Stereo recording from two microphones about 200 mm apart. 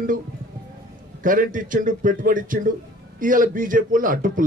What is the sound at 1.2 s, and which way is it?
A man's voice, 40° right (ahead or behind).